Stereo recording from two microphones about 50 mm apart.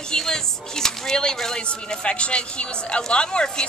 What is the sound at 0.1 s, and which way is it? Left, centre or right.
Speech, centre.